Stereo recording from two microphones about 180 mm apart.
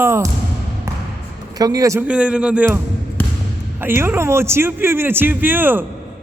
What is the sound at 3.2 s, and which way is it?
Basketball bounce, 10° left (ahead or behind).